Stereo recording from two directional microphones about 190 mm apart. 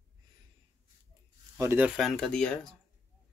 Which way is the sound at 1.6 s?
10° right (ahead or behind).